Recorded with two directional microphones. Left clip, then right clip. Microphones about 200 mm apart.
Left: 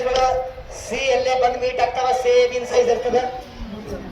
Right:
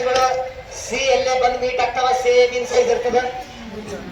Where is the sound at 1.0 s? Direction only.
30° left (ahead or behind).